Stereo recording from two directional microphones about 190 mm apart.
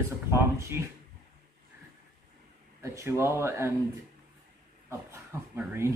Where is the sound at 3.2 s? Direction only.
15° right (ahead or behind).